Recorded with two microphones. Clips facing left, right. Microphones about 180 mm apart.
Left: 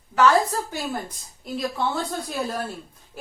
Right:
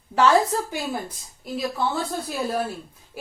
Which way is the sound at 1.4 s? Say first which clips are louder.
Even; centre (ahead or behind).